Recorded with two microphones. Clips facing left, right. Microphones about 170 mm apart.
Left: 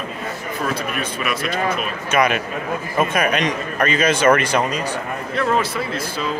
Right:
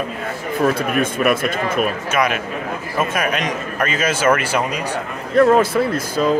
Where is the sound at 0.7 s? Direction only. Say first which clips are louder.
Right 6 dB; 50° right (ahead or behind).